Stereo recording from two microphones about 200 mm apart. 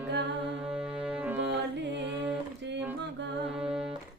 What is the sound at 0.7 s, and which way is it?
Music, 5° right (ahead or behind).